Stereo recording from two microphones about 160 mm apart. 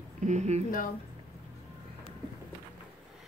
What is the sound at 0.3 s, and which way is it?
Speech, 45° right (ahead or behind).